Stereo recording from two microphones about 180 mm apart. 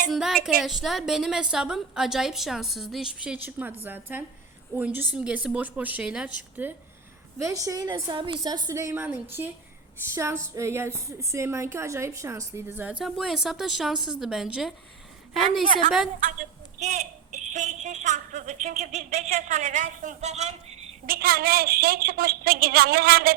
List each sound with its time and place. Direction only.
0.1 s a woman's voice: centre (ahead or behind)
16.8 s a woman's voice: 40° right (ahead or behind)
21.1 s a woman's voice: 55° right (ahead or behind)